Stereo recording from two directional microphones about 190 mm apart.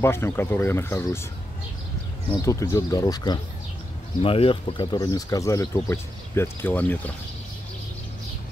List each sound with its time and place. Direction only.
0.0 s speech: 15° left (ahead or behind)
2.3 s speech: 15° left (ahead or behind)